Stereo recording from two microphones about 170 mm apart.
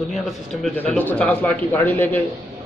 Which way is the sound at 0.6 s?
5° left (ahead or behind).